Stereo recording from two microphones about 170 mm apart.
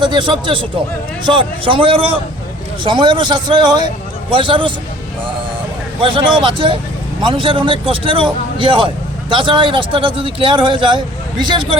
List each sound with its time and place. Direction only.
0.0 s a man's voice: 25° right (ahead or behind)
6.0 s a man's voice: 30° right (ahead or behind)